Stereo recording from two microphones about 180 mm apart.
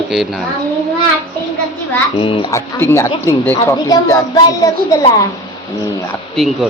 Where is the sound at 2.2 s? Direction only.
30° left (ahead or behind).